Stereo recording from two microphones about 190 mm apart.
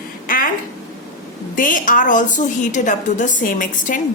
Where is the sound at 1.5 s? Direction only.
45° left (ahead or behind).